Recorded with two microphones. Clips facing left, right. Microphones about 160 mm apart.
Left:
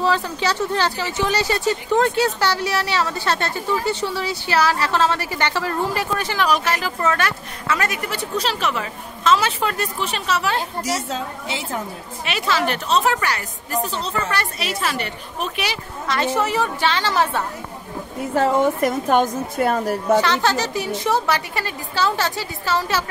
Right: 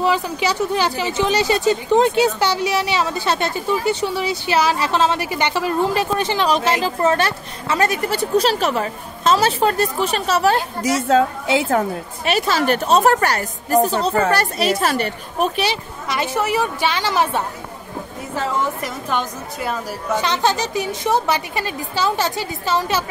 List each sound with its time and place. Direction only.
0.0 s speech: 15° right (ahead or behind); by 10.6 s 40° right (ahead or behind)
12.3 s a woman's voice: 40° right (ahead or behind)
16.1 s a woman's voice: 10° right (ahead or behind)
18.3 s a woman's voice: 55° left (ahead or behind)
20.2 s a woman's voice: 20° right (ahead or behind)